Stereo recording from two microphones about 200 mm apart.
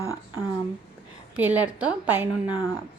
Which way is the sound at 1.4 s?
10° right (ahead or behind).